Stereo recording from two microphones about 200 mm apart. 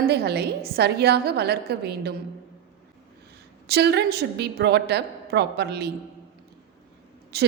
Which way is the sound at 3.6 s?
55° right (ahead or behind).